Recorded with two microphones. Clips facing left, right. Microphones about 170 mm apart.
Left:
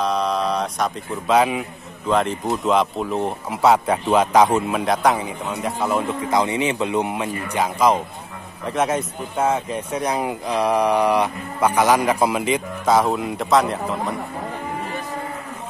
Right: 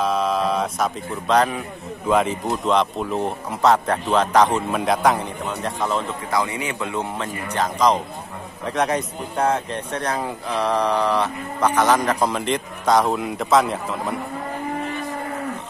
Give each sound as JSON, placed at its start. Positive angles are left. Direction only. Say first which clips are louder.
{"t": 0.0, "sound": "speech", "louder": "even", "side_deg": -5}
{"t": 6.3, "sound": "speech", "louder": "left 4 dB", "side_deg": 20}